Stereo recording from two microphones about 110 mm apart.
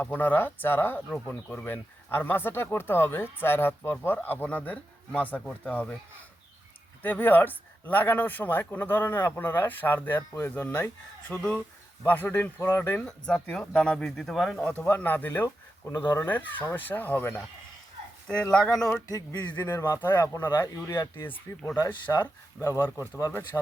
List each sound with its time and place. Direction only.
0.0 s a man's voice: 15° left (ahead or behind)
7.0 s a man's voice: 15° left (ahead or behind); by 14.6 s centre (ahead or behind)
14.6 s a man's voice: 15° left (ahead or behind)
18.5 s a man's voice: 5° left (ahead or behind)
19.0 s speech: 35° left (ahead or behind)
21.8 s speech: 40° left (ahead or behind)
22.8 s speech: 25° left (ahead or behind)